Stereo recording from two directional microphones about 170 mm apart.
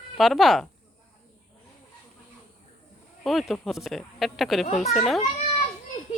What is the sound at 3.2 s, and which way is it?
Speech, centre (ahead or behind).